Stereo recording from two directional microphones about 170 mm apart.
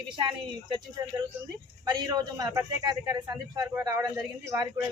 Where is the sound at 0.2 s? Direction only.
25° right (ahead or behind).